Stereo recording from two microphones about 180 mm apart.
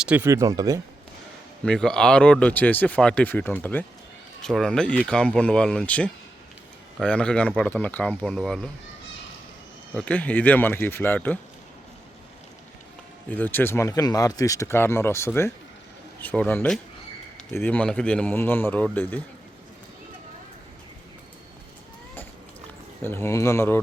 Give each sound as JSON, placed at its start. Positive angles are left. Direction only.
{"t": 0.0, "sound": "speech", "side_deg": -5}
{"t": 0.3, "sound": "speech", "side_deg": -15}
{"t": 1.6, "sound": "speech", "side_deg": 5}
{"t": 9.9, "sound": "speech", "side_deg": 10}
{"t": 13.3, "sound": "speech", "side_deg": 10}
{"t": 23.0, "sound": "speech", "side_deg": 15}